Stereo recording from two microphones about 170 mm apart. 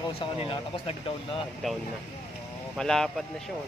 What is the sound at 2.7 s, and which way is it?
Speech, 5° left (ahead or behind).